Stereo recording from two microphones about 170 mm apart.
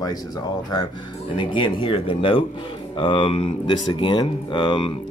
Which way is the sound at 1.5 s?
30° left (ahead or behind).